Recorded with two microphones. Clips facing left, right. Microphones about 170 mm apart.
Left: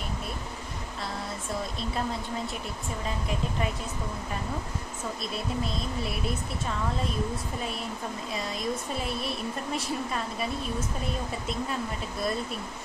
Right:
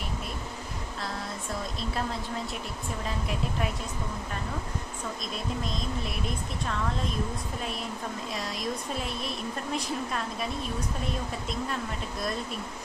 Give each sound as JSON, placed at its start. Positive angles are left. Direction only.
{"t": 1.8, "sound": "speech", "side_deg": 0}
{"t": 8.4, "sound": "speech", "side_deg": 0}